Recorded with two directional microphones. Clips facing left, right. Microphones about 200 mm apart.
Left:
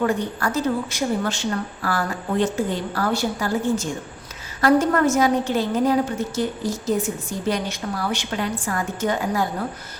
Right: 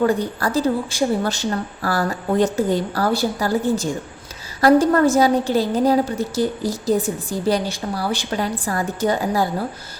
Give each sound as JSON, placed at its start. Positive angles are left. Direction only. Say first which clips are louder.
{"t": 0.0, "sound": "a woman's voice", "louder": "right 3 dB", "side_deg": -35}